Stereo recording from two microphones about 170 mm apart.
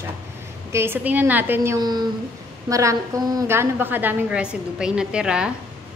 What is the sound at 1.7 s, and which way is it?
A woman's voice, 25° right (ahead or behind).